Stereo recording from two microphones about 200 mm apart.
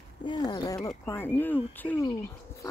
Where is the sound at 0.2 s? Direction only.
20° left (ahead or behind).